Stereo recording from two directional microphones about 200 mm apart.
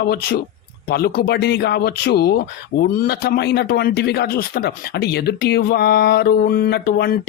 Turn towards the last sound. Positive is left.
turn(degrees=50)  # may be behind; listen again after turning